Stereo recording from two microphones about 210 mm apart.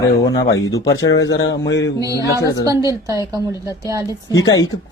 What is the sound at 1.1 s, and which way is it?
Speech, 60° left (ahead or behind).